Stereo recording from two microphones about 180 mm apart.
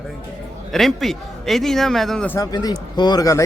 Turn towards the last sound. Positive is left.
turn(degrees=20)  # may be behind; listen again after turning